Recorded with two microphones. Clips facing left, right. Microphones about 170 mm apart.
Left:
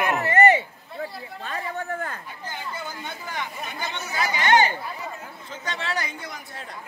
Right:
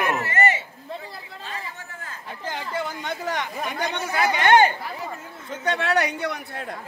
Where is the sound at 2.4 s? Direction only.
90° right; by 6.8 s 55° right (ahead or behind).